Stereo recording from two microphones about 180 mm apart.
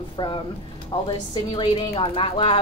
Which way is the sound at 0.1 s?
25° left (ahead or behind).